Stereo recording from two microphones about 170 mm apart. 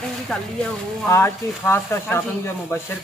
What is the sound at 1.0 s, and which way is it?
A man's voice, 15° left (ahead or behind).